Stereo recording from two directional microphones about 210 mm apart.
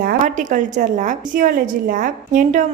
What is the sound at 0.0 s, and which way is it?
A woman's voice, 40° right (ahead or behind).